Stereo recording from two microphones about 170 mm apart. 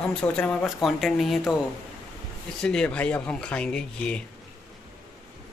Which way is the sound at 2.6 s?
5° left (ahead or behind).